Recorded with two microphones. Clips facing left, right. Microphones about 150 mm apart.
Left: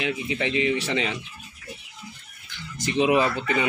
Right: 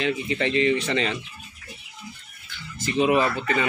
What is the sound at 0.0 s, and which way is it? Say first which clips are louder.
Speech: right 2 dB; 5° left (ahead or behind).